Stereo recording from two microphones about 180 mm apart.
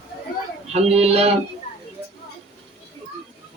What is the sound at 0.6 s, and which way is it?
Speech, 35° right (ahead or behind).